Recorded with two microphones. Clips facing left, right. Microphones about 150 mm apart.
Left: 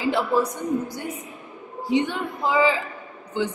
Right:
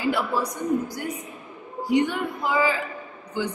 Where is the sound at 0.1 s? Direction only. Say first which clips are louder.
Left 3 dB; 25° left (ahead or behind).